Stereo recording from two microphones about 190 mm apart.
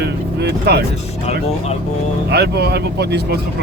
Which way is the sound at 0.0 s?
60° right (ahead or behind).